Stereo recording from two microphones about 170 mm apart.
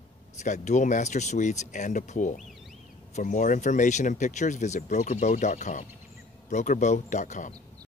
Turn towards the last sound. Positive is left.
turn(degrees=45)  # may be behind; listen again after turning